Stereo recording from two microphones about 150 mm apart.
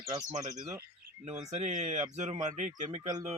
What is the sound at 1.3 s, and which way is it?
Speech, 50° right (ahead or behind).